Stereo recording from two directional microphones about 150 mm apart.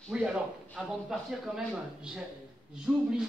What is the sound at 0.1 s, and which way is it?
Speech, 5° right (ahead or behind).